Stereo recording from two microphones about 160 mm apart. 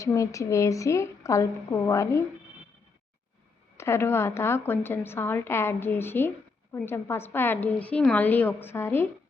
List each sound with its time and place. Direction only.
0.0 s a woman's voice: 20° left (ahead or behind)
3.8 s a woman's voice: 15° left (ahead or behind)